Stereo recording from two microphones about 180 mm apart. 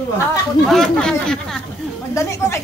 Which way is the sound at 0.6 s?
Centre (ahead or behind).